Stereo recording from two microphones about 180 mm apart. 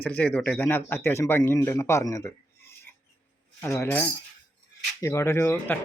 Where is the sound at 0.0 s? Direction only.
10° left (ahead or behind).